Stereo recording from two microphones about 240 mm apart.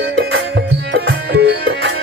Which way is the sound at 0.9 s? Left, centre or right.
Right.